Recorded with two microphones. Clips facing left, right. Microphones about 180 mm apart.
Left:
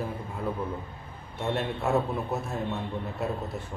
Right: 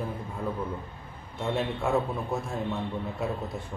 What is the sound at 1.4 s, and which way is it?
Speech, centre (ahead or behind).